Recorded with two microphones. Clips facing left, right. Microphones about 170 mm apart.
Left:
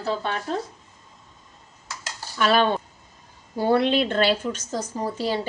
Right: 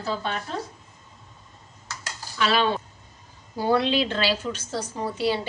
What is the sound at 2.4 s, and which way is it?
A woman's voice, 50° left (ahead or behind).